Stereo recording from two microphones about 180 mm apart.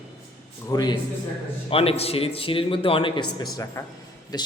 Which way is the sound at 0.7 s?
20° left (ahead or behind).